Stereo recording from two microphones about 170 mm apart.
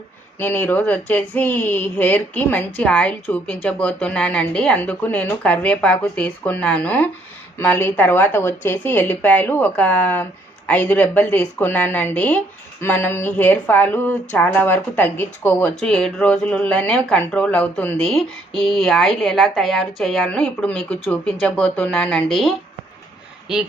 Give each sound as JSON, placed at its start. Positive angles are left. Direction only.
{"t": 0.3, "sound": "speech", "side_deg": 10}